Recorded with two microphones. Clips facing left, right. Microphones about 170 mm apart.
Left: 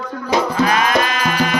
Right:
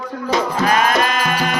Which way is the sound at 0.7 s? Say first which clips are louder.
Right 1 dB; 45° right (ahead or behind).